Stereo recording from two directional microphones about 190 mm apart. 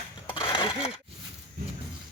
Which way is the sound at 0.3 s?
30° left (ahead or behind).